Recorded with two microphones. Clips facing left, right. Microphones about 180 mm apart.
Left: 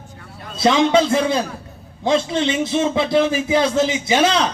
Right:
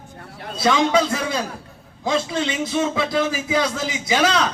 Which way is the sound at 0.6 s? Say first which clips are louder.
Left 3 dB; 25° left (ahead or behind).